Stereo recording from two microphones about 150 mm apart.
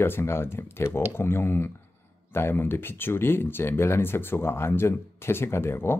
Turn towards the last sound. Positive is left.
turn(degrees=15)  # may be behind; listen again after turning